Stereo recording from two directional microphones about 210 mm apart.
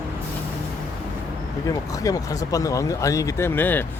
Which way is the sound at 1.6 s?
15° left (ahead or behind).